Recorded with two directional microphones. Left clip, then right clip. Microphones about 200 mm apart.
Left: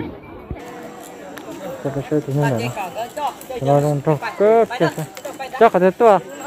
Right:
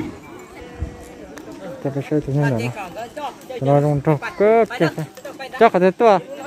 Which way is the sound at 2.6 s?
55° right (ahead or behind).